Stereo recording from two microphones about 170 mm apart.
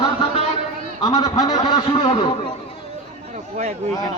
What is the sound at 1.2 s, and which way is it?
Speech, 20° left (ahead or behind).